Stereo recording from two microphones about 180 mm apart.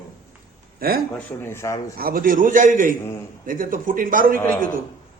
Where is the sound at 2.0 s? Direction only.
55° right (ahead or behind).